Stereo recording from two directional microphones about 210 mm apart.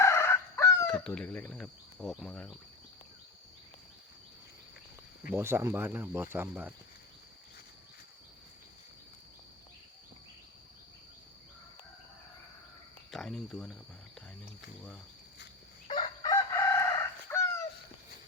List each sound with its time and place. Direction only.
0.0 s speech: 10° left (ahead or behind)
5.3 s speech: 10° right (ahead or behind)
13.1 s speech: centre (ahead or behind)
15.9 s chicken: 20° left (ahead or behind)